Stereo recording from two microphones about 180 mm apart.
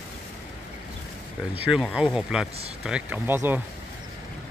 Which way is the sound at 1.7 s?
5° right (ahead or behind).